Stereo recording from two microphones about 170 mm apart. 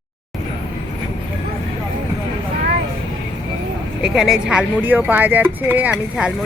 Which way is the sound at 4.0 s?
5° right (ahead or behind).